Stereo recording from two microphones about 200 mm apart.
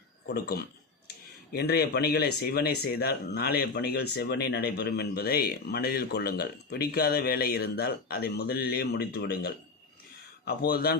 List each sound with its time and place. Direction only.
0.3 s speech: 50° left (ahead or behind)